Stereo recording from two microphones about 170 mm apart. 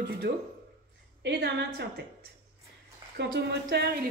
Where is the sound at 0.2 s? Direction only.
75° right (ahead or behind).